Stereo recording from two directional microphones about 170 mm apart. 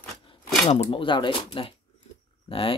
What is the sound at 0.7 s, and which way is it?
Speech, 30° left (ahead or behind).